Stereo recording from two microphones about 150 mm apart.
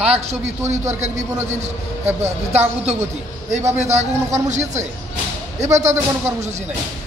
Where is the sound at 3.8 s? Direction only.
45° right (ahead or behind).